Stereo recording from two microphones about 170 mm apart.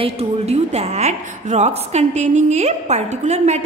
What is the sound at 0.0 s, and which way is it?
A woman's voice, 35° right (ahead or behind).